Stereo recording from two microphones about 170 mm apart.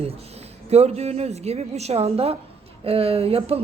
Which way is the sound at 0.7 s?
40° right (ahead or behind).